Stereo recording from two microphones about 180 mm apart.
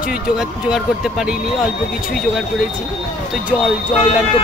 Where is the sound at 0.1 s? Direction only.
5° right (ahead or behind).